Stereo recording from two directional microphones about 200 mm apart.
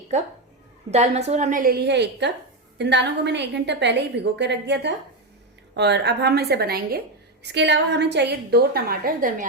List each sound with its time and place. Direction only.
0.9 s a woman's voice: 30° right (ahead or behind)